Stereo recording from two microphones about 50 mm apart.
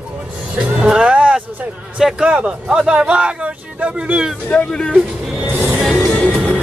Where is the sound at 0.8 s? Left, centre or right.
Centre.